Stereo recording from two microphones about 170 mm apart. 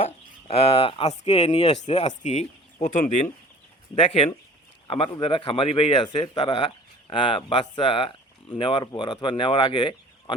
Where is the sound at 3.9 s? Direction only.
35° left (ahead or behind).